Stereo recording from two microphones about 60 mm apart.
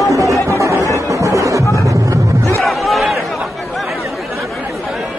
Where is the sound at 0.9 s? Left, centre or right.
Right.